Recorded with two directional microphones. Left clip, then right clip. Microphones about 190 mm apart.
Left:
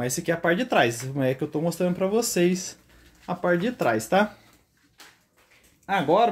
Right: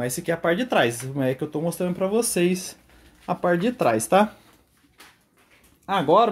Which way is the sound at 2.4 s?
25° right (ahead or behind).